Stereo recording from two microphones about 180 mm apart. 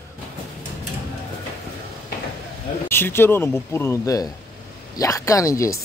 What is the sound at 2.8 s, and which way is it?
A man's voice, 15° left (ahead or behind).